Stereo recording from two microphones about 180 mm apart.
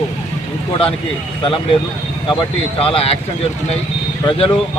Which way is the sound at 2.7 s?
30° left (ahead or behind).